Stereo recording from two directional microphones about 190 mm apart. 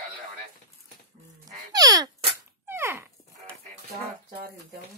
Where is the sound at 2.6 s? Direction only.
10° right (ahead or behind).